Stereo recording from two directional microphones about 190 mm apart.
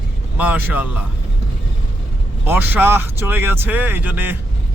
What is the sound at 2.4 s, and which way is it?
Speech, 10° right (ahead or behind).